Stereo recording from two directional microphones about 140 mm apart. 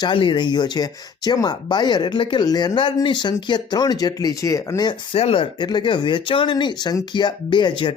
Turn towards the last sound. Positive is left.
turn(degrees=35)  # may be behind; listen again after turning